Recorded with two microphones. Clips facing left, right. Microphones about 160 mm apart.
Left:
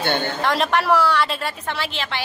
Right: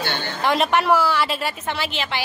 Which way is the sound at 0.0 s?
50° left (ahead or behind).